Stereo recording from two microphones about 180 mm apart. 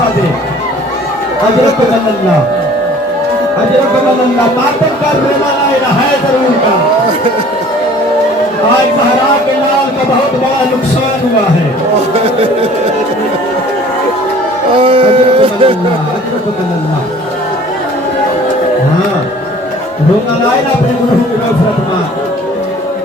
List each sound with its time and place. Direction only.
14.8 s speech: 30° right (ahead or behind)